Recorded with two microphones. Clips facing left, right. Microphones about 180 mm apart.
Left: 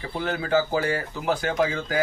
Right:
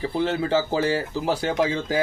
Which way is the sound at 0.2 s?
30° right (ahead or behind).